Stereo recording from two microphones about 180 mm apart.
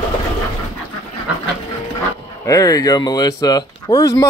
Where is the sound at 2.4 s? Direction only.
20° left (ahead or behind).